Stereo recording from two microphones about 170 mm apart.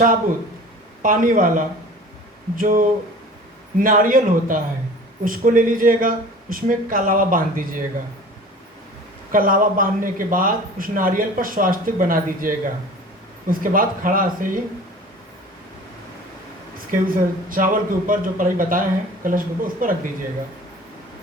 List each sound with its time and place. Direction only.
1.0 s speech: 55° right (ahead or behind)
9.3 s speech: 55° right (ahead or behind)
16.7 s speech: 55° right (ahead or behind)